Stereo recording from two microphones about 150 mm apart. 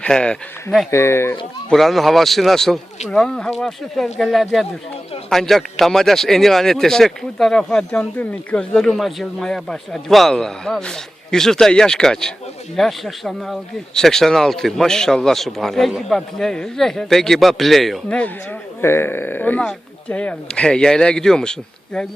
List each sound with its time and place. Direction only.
0.0 s speech: 5° left (ahead or behind)
0.9 s speech: 15° left (ahead or behind)
1.7 s speech: centre (ahead or behind)
18.8 s speech: 15° left (ahead or behind)